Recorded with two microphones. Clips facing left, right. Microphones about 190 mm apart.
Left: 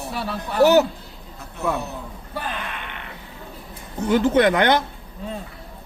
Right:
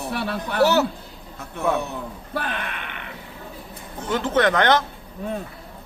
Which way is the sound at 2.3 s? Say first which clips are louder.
Right 2 dB; 65° right (ahead or behind).